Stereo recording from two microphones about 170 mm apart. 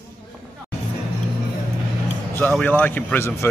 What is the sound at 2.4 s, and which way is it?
Speech, 10° left (ahead or behind).